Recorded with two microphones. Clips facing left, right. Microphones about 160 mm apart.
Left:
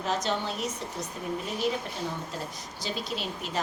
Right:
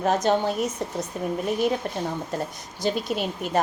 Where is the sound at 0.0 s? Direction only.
50° right (ahead or behind).